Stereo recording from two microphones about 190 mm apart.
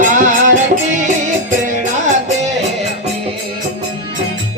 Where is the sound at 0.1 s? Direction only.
45° right (ahead or behind).